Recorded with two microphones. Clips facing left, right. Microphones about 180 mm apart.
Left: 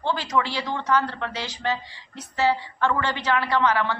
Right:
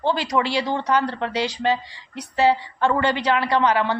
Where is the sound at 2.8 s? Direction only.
25° right (ahead or behind).